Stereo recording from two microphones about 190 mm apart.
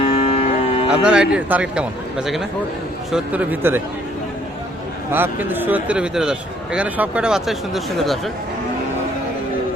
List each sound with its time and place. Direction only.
0.0 s cattle: 35° left (ahead or behind)
0.9 s a man's voice: 5° right (ahead or behind)
5.1 s a man's voice: 10° right (ahead or behind)